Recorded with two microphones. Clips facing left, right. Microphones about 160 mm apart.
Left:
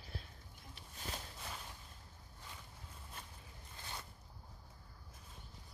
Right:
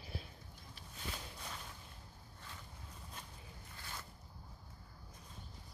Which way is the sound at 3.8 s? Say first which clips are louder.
Left 1 dB; 20° left (ahead or behind).